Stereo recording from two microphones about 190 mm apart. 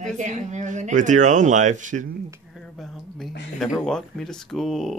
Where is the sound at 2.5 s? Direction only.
Centre (ahead or behind).